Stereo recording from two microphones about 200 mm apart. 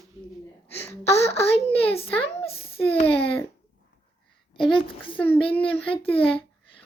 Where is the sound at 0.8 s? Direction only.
15° left (ahead or behind).